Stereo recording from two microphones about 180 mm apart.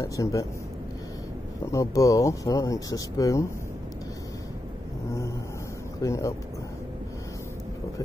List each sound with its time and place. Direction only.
0.0 s speech: 15° left (ahead or behind)
1.7 s speech: 15° left (ahead or behind)
5.9 s speech: 15° left (ahead or behind)